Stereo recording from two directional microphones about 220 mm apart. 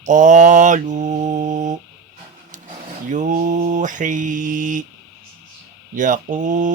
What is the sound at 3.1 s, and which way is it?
Mantra, 35° right (ahead or behind).